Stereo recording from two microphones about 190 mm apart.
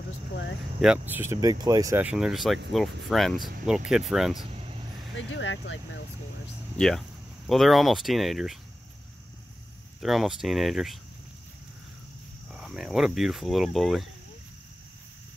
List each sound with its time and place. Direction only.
0.7 s speech: 5° right (ahead or behind)
5.1 s speech: 90° left
6.8 s speech: centre (ahead or behind)
9.9 s speech: centre (ahead or behind)
12.4 s speech: centre (ahead or behind)